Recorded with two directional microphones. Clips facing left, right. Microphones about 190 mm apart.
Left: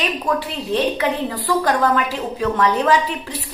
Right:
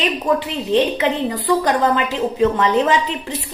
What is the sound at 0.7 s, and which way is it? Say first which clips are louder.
A woman's voice: right 3 dB; 20° right (ahead or behind).